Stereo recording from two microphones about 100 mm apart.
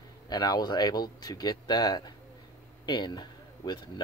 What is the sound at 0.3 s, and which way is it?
Speech, 40° left (ahead or behind).